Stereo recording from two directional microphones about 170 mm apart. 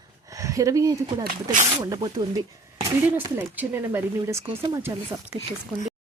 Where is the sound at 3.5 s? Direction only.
10° right (ahead or behind).